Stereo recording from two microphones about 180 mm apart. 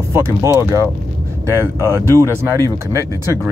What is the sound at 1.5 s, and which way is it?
Speech, 15° right (ahead or behind).